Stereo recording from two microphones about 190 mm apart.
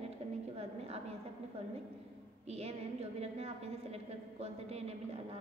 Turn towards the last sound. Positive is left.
turn(degrees=-35)  # may be behind; listen again after turning